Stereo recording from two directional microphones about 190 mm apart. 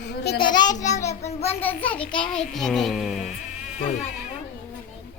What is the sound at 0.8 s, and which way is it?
Speech, 40° left (ahead or behind).